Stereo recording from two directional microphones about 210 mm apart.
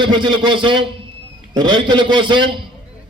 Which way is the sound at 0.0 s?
20° right (ahead or behind).